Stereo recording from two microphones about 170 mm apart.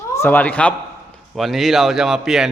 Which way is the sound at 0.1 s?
10° left (ahead or behind).